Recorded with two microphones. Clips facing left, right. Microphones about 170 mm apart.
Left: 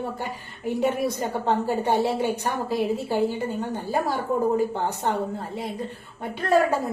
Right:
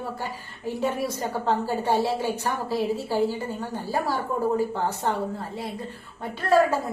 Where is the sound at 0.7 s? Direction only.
20° left (ahead or behind).